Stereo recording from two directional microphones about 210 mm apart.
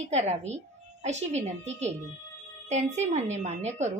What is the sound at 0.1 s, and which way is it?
A woman's voice, 30° right (ahead or behind).